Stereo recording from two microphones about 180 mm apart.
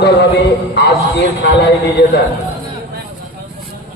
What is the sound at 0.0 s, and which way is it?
A man's voice, 70° left (ahead or behind).